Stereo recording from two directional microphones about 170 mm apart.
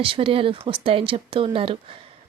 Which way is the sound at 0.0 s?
30° right (ahead or behind).